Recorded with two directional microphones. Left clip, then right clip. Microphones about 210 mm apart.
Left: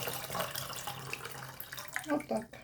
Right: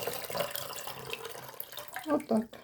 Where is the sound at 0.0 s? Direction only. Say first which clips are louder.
Right 3 dB; 15° right (ahead or behind).